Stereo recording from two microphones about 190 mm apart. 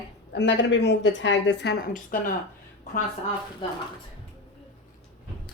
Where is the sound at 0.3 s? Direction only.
70° left (ahead or behind); by 2.3 s 45° left (ahead or behind).